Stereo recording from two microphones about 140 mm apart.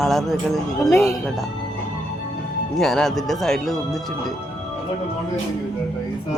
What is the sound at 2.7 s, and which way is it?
Speech, 5° left (ahead or behind).